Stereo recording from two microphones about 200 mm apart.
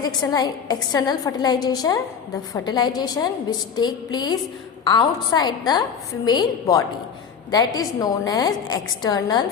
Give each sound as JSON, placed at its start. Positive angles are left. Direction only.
{"t": 0.0, "sound": "a woman's voice", "side_deg": 20}